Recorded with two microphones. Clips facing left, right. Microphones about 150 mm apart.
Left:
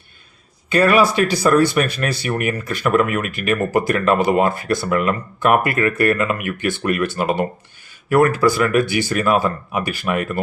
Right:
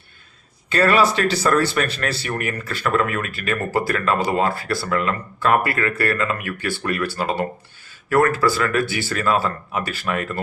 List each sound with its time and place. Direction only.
0.7 s speech: 15° left (ahead or behind)